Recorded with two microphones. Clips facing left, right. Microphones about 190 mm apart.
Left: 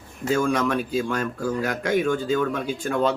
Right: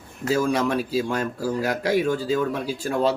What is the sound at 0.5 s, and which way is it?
Speech, 30° right (ahead or behind).